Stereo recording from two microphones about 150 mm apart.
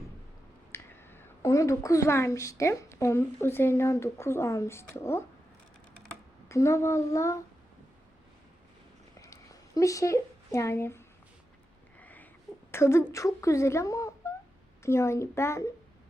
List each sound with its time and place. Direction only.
0.7 s speech: 15° left (ahead or behind)
6.5 s speech: 20° left (ahead or behind)
9.2 s a sound: 20° left (ahead or behind)
12.7 s a child's voice: 15° left (ahead or behind)